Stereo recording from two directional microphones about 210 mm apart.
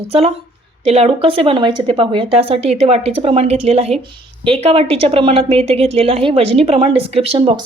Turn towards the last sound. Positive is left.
turn(degrees=-25)  # may be behind; listen again after turning